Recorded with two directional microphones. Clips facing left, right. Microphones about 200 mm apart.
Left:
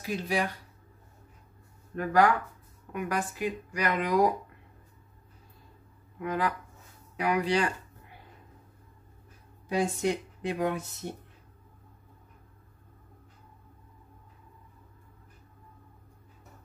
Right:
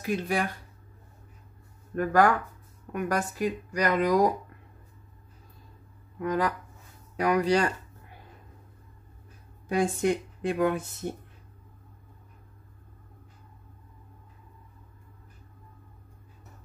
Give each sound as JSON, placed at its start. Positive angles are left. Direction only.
{"t": 0.0, "sound": "speech", "side_deg": -55}
{"t": 2.0, "sound": "speech", "side_deg": -45}
{"t": 6.2, "sound": "speech", "side_deg": -40}
{"t": 9.7, "sound": "a woman's voice", "side_deg": -50}